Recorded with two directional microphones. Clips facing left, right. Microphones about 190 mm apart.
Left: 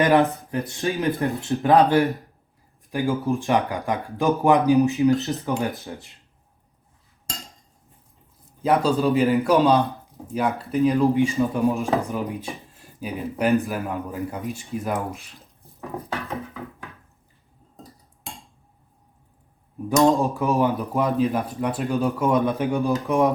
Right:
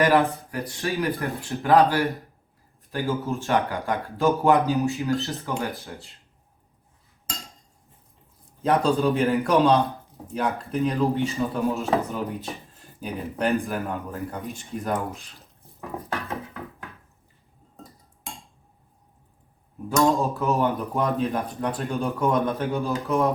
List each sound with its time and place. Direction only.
0.0 s speech: 20° left (ahead or behind)
8.6 s a man's voice: centre (ahead or behind)
20.0 s speech: 15° left (ahead or behind)